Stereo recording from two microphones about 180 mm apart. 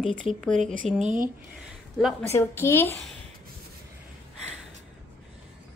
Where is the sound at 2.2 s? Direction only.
15° left (ahead or behind).